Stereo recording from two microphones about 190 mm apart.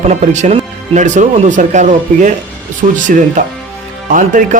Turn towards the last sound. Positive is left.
turn(degrees=-45)  # may be behind; listen again after turning